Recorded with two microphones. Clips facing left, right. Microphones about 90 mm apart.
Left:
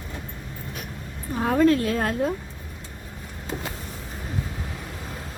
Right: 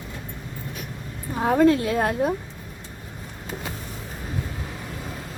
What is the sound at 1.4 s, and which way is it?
Speech, 20° right (ahead or behind).